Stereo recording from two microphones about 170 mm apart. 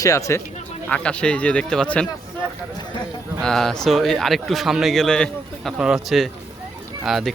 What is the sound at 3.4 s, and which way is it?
Speech, centre (ahead or behind).